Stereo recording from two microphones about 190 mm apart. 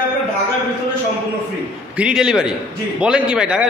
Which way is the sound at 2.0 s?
5° right (ahead or behind).